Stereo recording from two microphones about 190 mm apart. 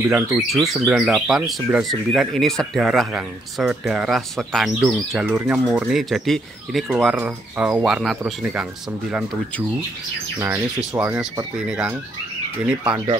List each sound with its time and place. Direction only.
0.0 s speech: 5° right (ahead or behind)
10.9 s speech: 5° right (ahead or behind)
12.9 s speech: 25° right (ahead or behind)